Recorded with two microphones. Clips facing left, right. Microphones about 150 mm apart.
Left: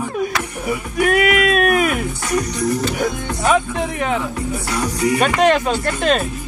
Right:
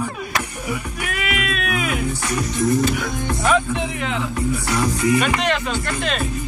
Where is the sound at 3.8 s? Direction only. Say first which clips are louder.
Left 4 dB; 50° left (ahead or behind).